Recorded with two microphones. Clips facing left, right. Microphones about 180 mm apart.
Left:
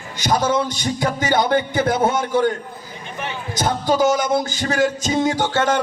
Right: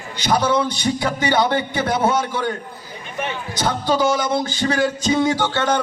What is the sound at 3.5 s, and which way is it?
A man's voice, 45° left (ahead or behind).